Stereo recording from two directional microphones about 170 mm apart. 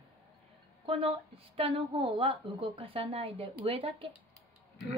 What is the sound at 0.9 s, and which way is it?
A woman's voice, 35° right (ahead or behind).